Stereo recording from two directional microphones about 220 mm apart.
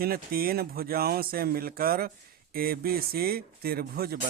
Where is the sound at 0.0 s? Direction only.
40° right (ahead or behind).